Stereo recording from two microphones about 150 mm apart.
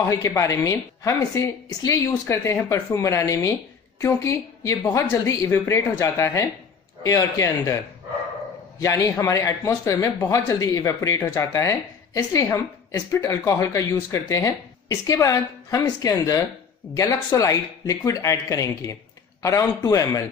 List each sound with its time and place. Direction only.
0.1 s a man's voice: 20° left (ahead or behind)
8.8 s a man's voice: 20° left (ahead or behind)